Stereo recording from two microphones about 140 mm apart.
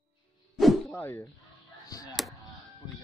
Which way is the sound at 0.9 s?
15° left (ahead or behind).